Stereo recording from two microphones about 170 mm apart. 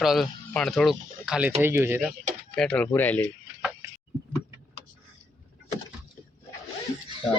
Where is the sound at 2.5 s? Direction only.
5° left (ahead or behind).